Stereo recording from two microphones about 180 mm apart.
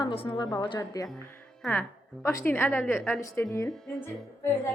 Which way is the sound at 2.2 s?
15° left (ahead or behind).